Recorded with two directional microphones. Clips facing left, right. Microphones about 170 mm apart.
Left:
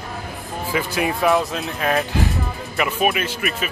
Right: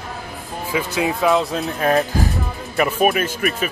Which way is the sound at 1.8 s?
35° right (ahead or behind).